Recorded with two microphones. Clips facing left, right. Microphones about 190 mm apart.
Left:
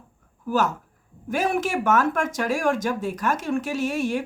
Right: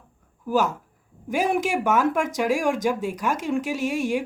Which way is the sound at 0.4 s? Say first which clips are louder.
Right 1 dB; 15° right (ahead or behind).